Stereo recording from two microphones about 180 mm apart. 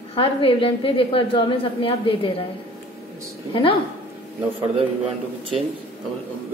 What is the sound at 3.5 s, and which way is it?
Speech, 30° left (ahead or behind).